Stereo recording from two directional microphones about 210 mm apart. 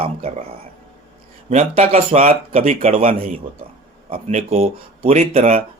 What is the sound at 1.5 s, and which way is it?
Speech, 30° right (ahead or behind).